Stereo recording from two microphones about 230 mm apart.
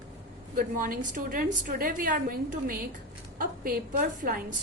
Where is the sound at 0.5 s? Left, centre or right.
Right.